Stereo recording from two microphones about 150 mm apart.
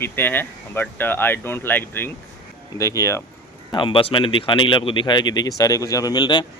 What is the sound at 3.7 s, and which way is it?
Speech, 35° left (ahead or behind).